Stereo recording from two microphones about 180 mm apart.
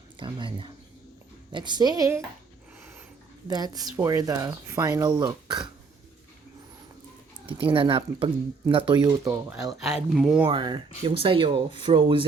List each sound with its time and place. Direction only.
0.2 s speech: 25° right (ahead or behind)
3.4 s speech: 20° right (ahead or behind)
7.4 s speech: 30° right (ahead or behind)
9.8 s speech: centre (ahead or behind)
10.4 s speech: 25° right (ahead or behind)